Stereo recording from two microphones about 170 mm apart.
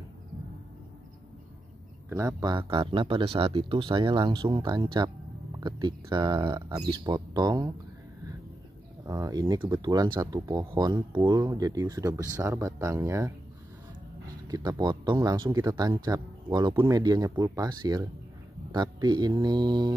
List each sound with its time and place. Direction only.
2.0 s speech: 20° right (ahead or behind)
9.0 s speech: 20° right (ahead or behind)
14.5 s speech: 25° right (ahead or behind)